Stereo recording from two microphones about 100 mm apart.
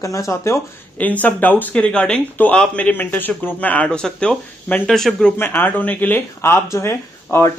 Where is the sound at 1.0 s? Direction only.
15° left (ahead or behind).